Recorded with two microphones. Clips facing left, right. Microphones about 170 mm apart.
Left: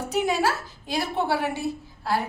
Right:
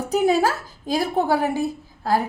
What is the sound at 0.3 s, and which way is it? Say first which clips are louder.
A woman's voice: right 5 dB; 40° right (ahead or behind).